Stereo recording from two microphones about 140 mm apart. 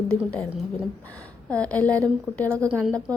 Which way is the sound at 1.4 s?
10° left (ahead or behind).